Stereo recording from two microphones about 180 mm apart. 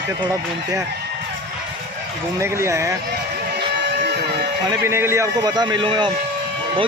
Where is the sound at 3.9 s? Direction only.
65° right (ahead or behind).